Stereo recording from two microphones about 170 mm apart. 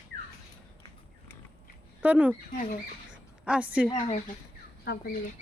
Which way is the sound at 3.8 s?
25° left (ahead or behind).